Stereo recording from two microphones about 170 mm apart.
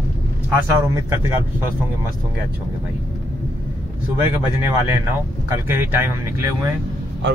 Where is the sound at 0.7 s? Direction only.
20° right (ahead or behind).